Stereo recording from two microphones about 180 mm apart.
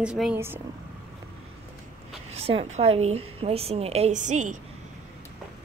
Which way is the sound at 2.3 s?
35° right (ahead or behind).